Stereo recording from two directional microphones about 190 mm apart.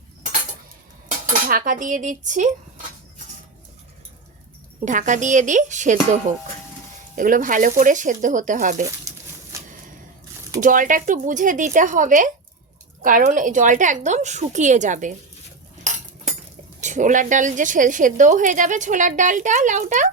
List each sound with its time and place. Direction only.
1.0 s dishes: 50° right (ahead or behind)
4.9 s a woman's voice: 40° right (ahead or behind)
8.8 s a sound: 15° right (ahead or behind)
10.6 s a woman's voice: 45° right (ahead or behind)
16.8 s a woman's voice: 40° right (ahead or behind)